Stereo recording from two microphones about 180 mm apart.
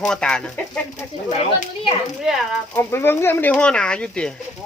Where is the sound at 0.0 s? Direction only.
5° left (ahead or behind).